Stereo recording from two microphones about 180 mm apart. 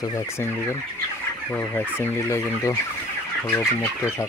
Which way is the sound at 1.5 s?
10° left (ahead or behind).